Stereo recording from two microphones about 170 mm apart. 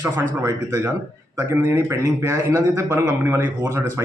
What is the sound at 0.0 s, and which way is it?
A man's voice, 15° right (ahead or behind).